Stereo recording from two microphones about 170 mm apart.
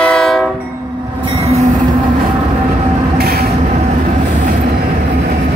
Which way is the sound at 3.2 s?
65° right (ahead or behind).